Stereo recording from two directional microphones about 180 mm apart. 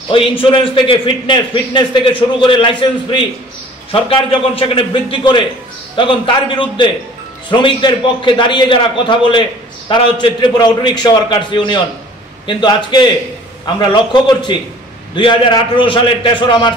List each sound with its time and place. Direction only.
0.1 s a man's voice: 30° left (ahead or behind)